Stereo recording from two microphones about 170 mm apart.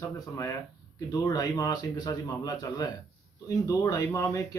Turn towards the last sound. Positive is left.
turn(degrees=20)  # may be behind; listen again after turning